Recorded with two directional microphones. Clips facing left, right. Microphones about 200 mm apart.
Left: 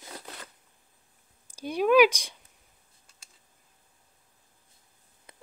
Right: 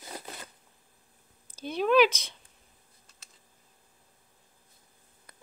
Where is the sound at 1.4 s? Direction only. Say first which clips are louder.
Left 3 dB; 10° left (ahead or behind).